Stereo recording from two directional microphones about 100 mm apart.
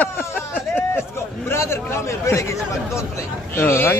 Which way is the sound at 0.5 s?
15° left (ahead or behind).